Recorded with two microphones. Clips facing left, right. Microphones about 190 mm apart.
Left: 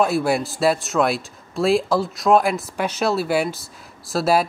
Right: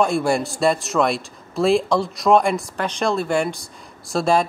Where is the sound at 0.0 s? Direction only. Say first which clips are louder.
Even; 5° left (ahead or behind).